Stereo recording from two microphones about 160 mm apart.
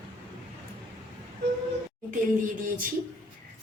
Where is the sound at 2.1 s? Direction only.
55° right (ahead or behind).